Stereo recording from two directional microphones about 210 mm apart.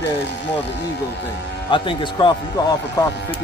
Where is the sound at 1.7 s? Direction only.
20° left (ahead or behind).